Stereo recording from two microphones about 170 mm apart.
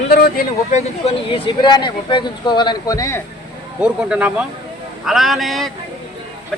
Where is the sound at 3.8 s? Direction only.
5° right (ahead or behind).